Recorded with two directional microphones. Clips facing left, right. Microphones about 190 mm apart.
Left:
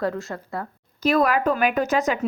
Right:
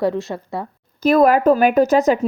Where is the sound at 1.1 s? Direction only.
45° right (ahead or behind).